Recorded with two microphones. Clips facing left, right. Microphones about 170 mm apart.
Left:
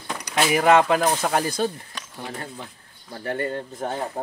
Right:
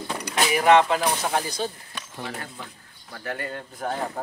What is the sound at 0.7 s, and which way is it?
Speech, 50° left (ahead or behind).